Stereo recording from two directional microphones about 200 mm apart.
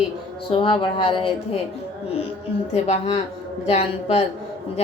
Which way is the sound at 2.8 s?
35° left (ahead or behind).